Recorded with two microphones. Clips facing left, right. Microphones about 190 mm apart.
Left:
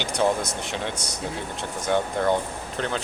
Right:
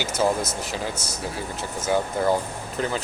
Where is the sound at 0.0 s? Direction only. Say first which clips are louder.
Even; 5° right (ahead or behind).